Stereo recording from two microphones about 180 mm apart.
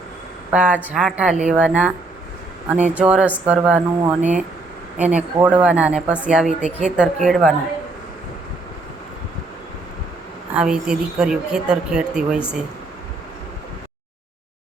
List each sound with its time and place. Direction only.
0.5 s a woman's voice: 10° right (ahead or behind)
6.6 s a woman's voice: 40° right (ahead or behind)
6.8 s speech: 5° right (ahead or behind)
10.5 s speech: 5° right (ahead or behind)